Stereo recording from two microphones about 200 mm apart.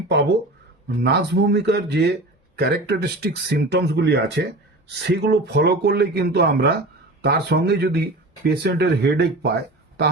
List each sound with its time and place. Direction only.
0.9 s speech: 55° right (ahead or behind)